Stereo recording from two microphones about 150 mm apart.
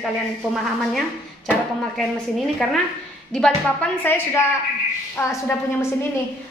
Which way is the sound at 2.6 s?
Centre (ahead or behind).